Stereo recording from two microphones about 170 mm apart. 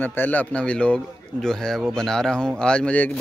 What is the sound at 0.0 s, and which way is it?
Speech, 10° left (ahead or behind).